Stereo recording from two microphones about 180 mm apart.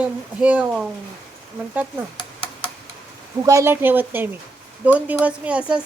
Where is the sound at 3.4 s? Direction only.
15° right (ahead or behind).